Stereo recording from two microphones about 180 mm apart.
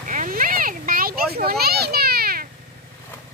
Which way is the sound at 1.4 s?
60° right (ahead or behind).